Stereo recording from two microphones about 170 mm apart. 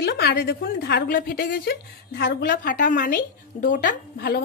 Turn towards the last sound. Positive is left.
turn(degrees=70)  # may be behind; listen again after turning